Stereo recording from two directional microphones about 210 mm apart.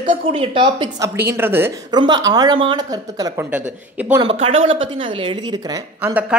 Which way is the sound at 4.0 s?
5° right (ahead or behind).